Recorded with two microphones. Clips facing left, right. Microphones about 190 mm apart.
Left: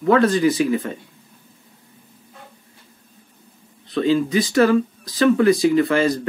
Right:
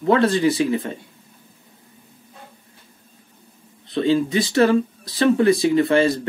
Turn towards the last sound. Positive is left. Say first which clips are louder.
# even
turn(degrees=-30)  # may be behind; listen again after turning